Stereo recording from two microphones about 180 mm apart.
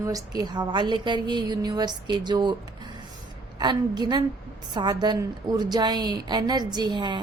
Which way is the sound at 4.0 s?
25° right (ahead or behind).